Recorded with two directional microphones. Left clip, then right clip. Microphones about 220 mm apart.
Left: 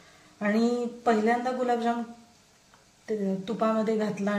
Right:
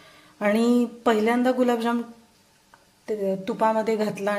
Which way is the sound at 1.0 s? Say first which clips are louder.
Right 3 dB; 45° right (ahead or behind).